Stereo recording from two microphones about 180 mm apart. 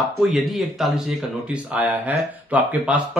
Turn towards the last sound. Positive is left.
turn(degrees=-5)  # may be behind; listen again after turning